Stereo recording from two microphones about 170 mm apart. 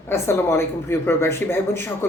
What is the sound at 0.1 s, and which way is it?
Speech, 15° left (ahead or behind).